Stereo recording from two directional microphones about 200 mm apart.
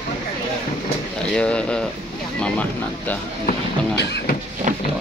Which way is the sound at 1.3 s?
5° left (ahead or behind).